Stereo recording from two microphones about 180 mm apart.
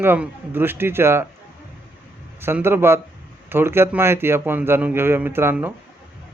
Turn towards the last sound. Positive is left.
turn(degrees=-10)  # may be behind; listen again after turning